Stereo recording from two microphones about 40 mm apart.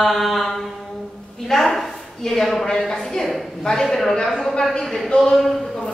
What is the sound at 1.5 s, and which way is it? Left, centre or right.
A woman's voice, centre.